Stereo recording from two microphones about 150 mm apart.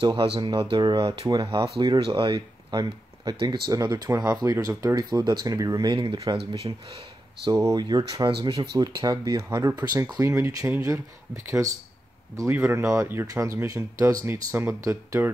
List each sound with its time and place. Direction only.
0.0 s speech: 35° right (ahead or behind)
7.4 s speech: 25° right (ahead or behind)